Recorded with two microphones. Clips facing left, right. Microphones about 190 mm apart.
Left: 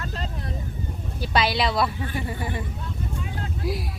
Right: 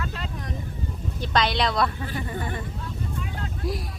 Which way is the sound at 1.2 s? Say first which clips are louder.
Left 1 dB; 5° left (ahead or behind).